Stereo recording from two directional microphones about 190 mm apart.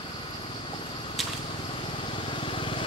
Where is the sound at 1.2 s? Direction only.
Centre (ahead or behind).